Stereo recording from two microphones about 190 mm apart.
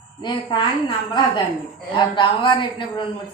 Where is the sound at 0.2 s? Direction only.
25° left (ahead or behind).